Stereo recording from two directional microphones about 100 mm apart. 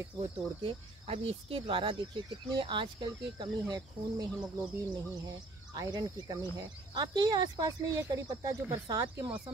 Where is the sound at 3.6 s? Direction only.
40° right (ahead or behind).